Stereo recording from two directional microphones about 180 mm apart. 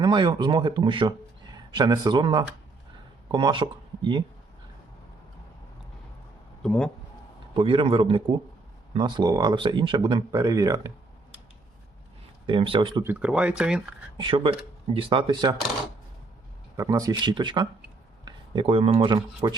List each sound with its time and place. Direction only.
0.0 s speech: 25° right (ahead or behind)
6.6 s speech: 5° left (ahead or behind)
7.5 s speech: 30° right (ahead or behind)
12.5 s speech: 30° right (ahead or behind)
13.1 s speech: 10° right (ahead or behind)
14.2 s speech: 30° right (ahead or behind)
16.7 s speech: 20° right (ahead or behind)